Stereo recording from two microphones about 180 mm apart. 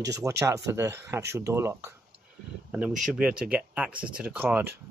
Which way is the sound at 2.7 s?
5° right (ahead or behind).